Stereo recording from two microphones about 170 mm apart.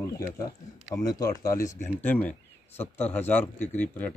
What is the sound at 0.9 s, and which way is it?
Speech, 20° left (ahead or behind).